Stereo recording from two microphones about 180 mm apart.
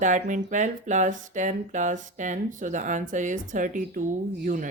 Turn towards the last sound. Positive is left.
turn(degrees=-45)  # may be behind; listen again after turning